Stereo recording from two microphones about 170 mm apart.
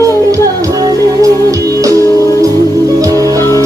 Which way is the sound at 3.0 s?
20° right (ahead or behind).